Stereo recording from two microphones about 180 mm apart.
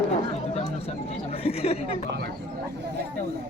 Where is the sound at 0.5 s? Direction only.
35° left (ahead or behind).